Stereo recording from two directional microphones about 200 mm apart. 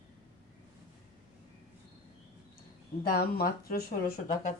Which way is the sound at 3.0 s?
50° left (ahead or behind).